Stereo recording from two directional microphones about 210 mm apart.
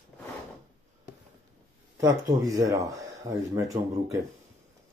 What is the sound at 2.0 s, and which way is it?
Speech, 15° right (ahead or behind).